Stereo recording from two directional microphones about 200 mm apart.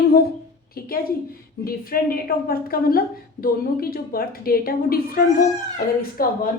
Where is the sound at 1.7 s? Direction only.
45° left (ahead or behind).